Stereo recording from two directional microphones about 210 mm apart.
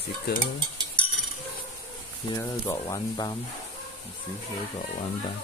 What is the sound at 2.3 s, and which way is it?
Speech, 15° left (ahead or behind).